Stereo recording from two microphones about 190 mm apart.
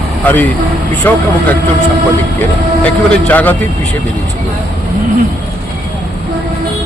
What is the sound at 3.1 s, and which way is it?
Speech, 10° left (ahead or behind).